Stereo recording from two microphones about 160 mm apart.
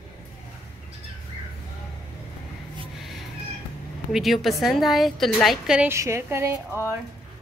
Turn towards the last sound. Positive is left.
turn(degrees=-15)  # may be behind; listen again after turning